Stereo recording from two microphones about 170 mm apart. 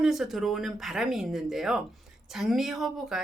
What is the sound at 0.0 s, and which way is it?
Speech, centre (ahead or behind).